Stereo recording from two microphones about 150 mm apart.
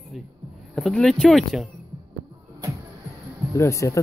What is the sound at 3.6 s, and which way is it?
Speech, 20° left (ahead or behind).